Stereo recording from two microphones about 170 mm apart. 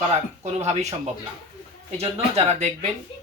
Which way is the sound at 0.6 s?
40° right (ahead or behind).